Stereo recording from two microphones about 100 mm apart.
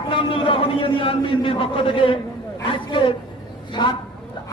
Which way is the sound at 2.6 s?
60° left (ahead or behind).